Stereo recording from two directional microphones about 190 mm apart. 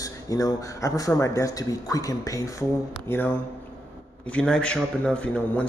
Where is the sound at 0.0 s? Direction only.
20° left (ahead or behind).